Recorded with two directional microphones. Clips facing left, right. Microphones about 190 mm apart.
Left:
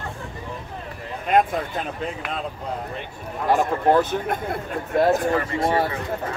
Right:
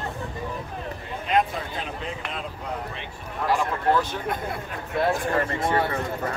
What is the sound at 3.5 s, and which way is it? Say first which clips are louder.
Speech: left 4 dB; 45° left (ahead or behind).